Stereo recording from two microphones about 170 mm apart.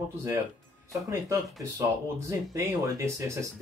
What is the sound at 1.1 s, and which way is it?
Speech, 20° right (ahead or behind).